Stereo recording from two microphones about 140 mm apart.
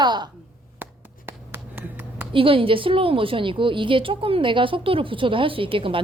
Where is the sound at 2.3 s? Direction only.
40° right (ahead or behind).